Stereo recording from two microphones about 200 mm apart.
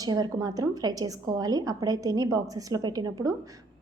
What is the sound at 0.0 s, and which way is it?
A woman's voice, 20° right (ahead or behind).